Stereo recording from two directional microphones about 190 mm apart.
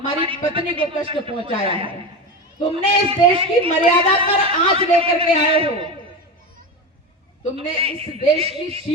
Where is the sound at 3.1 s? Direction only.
30° right (ahead or behind).